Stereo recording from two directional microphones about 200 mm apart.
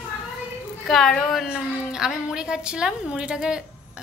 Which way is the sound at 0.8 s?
Centre (ahead or behind).